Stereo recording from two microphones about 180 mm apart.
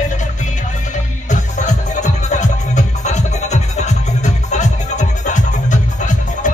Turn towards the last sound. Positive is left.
turn(degrees=45)  # may be behind; listen again after turning